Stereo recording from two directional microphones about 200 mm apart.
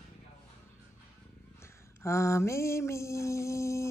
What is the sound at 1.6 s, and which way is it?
Mantra, 15° left (ahead or behind).